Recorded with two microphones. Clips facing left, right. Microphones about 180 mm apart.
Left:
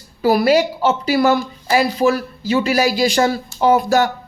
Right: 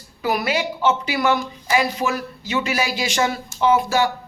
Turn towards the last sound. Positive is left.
turn(degrees=45)  # may be behind; listen again after turning